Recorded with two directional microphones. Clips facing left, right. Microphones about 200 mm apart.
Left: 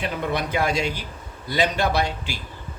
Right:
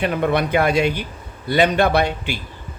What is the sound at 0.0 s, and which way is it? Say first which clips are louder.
Speech: right 7 dB; 60° right (ahead or behind).